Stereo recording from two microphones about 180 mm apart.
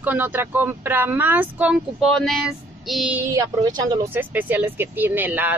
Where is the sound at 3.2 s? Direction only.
15° right (ahead or behind).